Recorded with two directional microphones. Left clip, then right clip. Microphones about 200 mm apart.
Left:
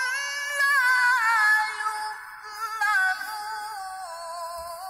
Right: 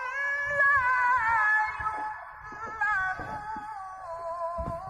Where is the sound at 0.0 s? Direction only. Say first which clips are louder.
Left 2 dB; 25° left (ahead or behind).